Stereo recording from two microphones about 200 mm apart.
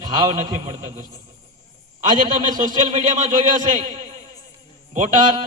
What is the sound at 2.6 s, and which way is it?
A man's voice, 40° right (ahead or behind).